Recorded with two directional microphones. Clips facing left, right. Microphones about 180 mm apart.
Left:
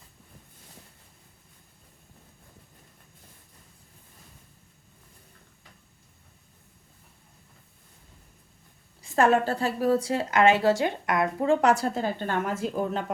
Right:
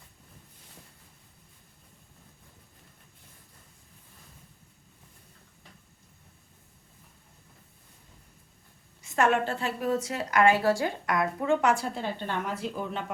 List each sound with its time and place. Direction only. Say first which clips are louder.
9.0 s a woman's voice: left 3 dB; 35° left (ahead or behind)
11.4 s a woman's voice: left 4 dB; 35° left (ahead or behind)